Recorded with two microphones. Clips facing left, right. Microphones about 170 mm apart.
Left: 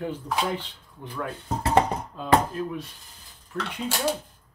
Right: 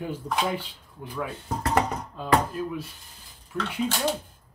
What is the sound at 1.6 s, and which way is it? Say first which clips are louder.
Speech: left 3 dB; 25° left (ahead or behind).